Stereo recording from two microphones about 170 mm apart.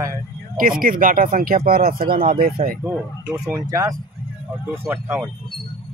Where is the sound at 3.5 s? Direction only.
20° right (ahead or behind).